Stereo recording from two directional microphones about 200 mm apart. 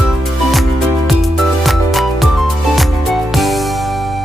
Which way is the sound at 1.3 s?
Centre (ahead or behind).